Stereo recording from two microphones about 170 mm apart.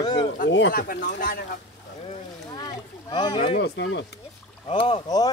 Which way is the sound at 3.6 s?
80° left.